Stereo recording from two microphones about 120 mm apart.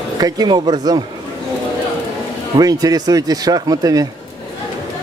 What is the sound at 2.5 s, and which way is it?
Speech, 30° right (ahead or behind).